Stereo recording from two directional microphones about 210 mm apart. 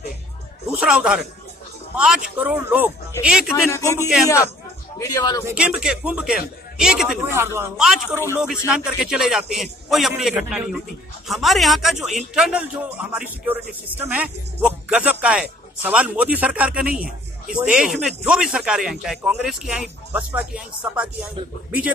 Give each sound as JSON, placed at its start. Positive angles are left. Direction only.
{"t": 0.7, "sound": "a man's voice", "side_deg": -5}
{"t": 3.7, "sound": "speech", "side_deg": 15}
{"t": 5.5, "sound": "a man's voice", "side_deg": -5}